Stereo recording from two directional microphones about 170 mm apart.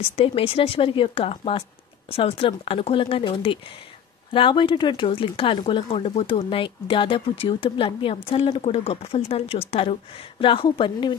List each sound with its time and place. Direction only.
0.1 s speech: 35° left (ahead or behind)